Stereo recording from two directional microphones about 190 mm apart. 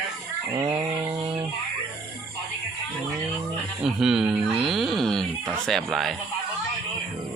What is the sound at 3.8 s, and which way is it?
Speech, centre (ahead or behind).